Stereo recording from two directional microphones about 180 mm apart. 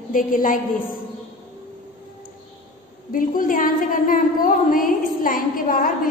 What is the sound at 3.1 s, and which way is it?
A woman's voice, 50° left (ahead or behind).